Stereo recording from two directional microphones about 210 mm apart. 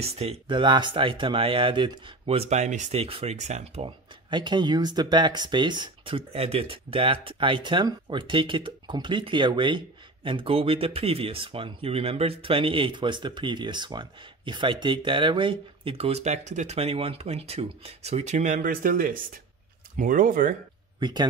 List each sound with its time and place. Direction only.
0.0 s speech: 30° right (ahead or behind)
21.0 s speech: 20° right (ahead or behind)